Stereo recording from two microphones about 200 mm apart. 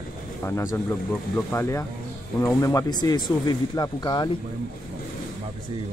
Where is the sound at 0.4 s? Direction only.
10° left (ahead or behind).